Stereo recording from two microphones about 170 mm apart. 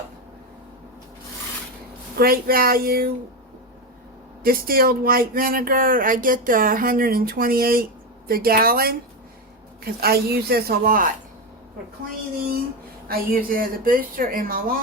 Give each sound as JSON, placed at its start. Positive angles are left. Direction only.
{"t": 2.1, "sound": "speech", "side_deg": -60}
{"t": 4.4, "sound": "speech", "side_deg": -60}
{"t": 13.1, "sound": "speech", "side_deg": -55}